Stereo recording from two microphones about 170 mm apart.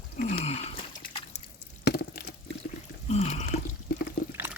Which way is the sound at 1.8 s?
75° left (ahead or behind).